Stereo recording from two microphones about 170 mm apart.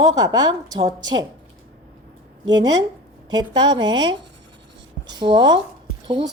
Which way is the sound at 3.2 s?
25° right (ahead or behind).